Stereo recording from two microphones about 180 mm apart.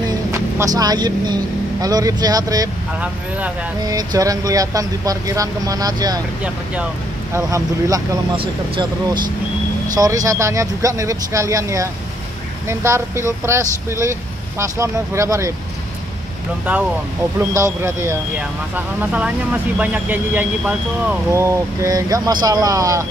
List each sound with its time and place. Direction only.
0.3 s speech: 20° right (ahead or behind)
3.0 s speech: 10° right (ahead or behind)
3.8 s speech: 20° right (ahead or behind)
6.4 s speech: 5° right (ahead or behind)
7.3 s speech: 20° right (ahead or behind)
8.4 s speech: 30° right (ahead or behind)
17.6 s speech: 15° right (ahead or behind)